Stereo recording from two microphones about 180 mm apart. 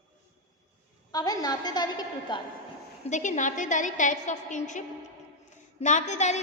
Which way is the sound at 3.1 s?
45° left (ahead or behind).